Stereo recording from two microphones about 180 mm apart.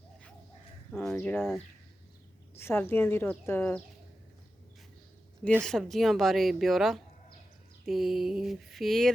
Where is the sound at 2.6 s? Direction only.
15° left (ahead or behind).